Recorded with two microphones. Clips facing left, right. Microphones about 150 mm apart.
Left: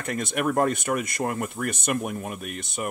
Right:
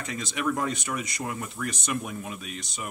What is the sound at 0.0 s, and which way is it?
Speech, 55° left (ahead or behind).